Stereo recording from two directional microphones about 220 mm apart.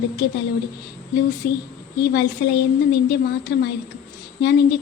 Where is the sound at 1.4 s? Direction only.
45° left (ahead or behind).